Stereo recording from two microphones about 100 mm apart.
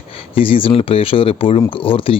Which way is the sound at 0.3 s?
65° left (ahead or behind).